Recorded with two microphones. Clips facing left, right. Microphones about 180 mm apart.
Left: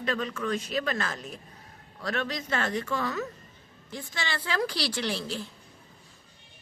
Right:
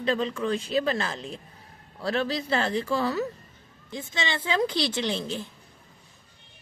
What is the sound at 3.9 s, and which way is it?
A woman's voice, 20° right (ahead or behind).